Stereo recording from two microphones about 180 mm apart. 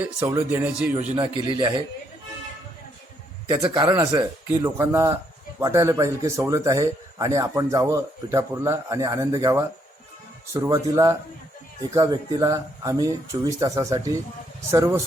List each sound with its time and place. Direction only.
0.2 s speech: 15° right (ahead or behind)
1.2 s speech: 25° right (ahead or behind)
3.4 s speech: 25° right (ahead or behind)